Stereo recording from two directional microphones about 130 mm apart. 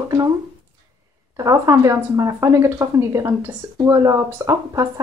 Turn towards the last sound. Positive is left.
turn(degrees=-25)  # may be behind; listen again after turning